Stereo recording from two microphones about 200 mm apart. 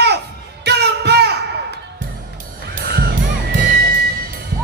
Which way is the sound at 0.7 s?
55° right (ahead or behind).